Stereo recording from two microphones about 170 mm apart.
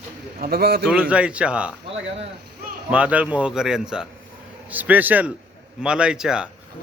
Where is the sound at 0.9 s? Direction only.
5° right (ahead or behind).